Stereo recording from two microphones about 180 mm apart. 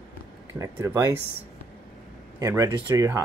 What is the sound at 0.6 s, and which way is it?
Speech, 15° right (ahead or behind).